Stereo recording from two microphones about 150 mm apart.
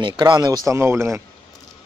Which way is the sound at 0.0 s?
30° right (ahead or behind).